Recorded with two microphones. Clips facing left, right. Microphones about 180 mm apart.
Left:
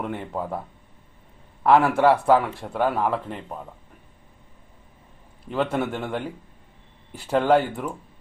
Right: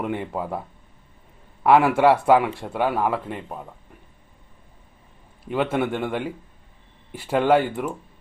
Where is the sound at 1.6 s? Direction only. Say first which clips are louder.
Right 1 dB; 10° right (ahead or behind).